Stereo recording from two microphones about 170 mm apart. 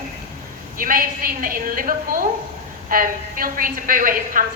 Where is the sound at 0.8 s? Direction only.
55° right (ahead or behind).